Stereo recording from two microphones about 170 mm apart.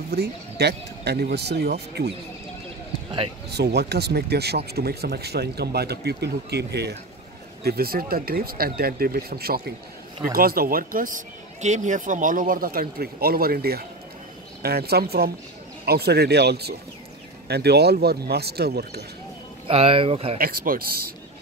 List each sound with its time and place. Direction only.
0.1 s speech: 75° right (ahead or behind)
3.5 s speech: 75° right (ahead or behind)
7.6 s speech: 65° right (ahead or behind)
11.6 s speech: 45° right (ahead or behind); by 19.0 s 70° right (ahead or behind)
19.7 s speech: 35° right (ahead or behind)
20.3 s speech: 60° right (ahead or behind)